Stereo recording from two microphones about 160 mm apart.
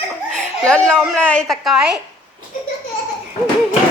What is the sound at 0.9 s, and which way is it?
A woman's voice, 5° left (ahead or behind).